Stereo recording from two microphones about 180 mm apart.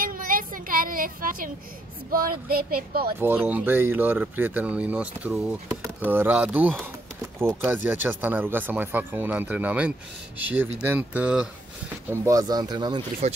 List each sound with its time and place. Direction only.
0.0 s a sound: 50° right (ahead or behind)
2.0 s speech: 55° right (ahead or behind)
3.2 s speech: 10° right (ahead or behind)
12.1 s speech: 20° right (ahead or behind)